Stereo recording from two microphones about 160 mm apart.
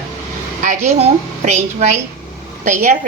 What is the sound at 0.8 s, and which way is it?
A woman's voice, 45° right (ahead or behind).